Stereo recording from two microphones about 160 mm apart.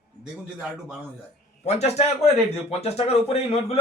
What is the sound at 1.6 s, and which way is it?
Speech, 45° left (ahead or behind).